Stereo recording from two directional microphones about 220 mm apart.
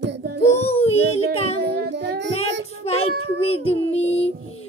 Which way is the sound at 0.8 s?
30° left (ahead or behind).